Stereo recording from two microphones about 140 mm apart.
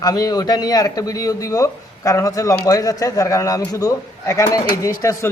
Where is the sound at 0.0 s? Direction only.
25° left (ahead or behind).